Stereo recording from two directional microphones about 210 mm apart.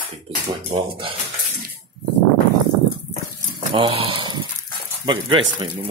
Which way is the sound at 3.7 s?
25° right (ahead or behind).